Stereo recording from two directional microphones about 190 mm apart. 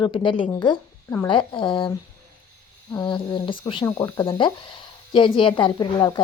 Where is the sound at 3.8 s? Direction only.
15° left (ahead or behind).